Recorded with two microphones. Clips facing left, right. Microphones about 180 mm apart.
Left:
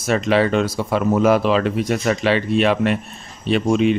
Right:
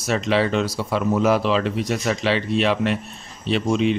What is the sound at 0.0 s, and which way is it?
Speech, 55° left (ahead or behind).